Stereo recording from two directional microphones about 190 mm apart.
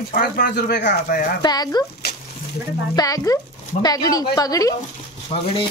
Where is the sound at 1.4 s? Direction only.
20° left (ahead or behind).